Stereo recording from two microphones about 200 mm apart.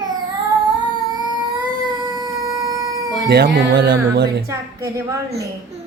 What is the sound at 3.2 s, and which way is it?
Speech, 50° right (ahead or behind).